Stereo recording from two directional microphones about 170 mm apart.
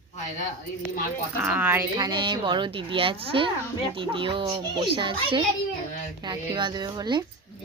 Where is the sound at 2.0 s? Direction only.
25° right (ahead or behind).